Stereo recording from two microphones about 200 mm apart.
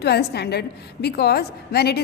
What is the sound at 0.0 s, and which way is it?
A woman's voice, 55° left (ahead or behind).